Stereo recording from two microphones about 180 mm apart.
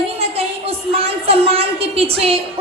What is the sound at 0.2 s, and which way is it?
A woman's voice, 35° right (ahead or behind).